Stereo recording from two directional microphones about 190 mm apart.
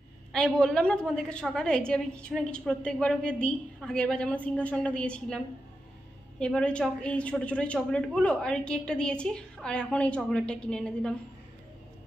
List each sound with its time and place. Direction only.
0.3 s a woman's voice: 5° left (ahead or behind)
6.4 s a woman's voice: 5° left (ahead or behind)